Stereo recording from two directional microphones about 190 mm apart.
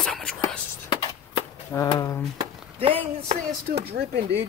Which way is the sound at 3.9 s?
55° right (ahead or behind).